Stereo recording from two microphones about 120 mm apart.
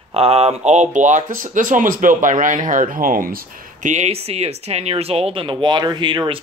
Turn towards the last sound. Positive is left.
turn(degrees=-45)  # may be behind; listen again after turning